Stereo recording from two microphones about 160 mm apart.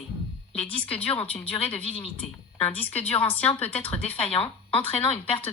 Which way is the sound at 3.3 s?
10° left (ahead or behind).